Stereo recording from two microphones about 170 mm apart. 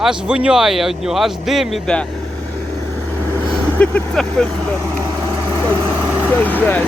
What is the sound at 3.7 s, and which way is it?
Speech, 5° left (ahead or behind).